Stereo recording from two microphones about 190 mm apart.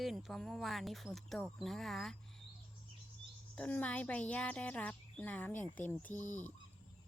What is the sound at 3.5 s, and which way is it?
Speech, 5° left (ahead or behind).